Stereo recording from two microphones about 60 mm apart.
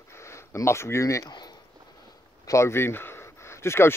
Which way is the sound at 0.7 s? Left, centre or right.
Left.